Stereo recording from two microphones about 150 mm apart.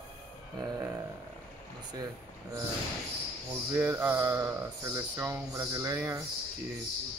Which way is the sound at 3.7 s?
15° right (ahead or behind).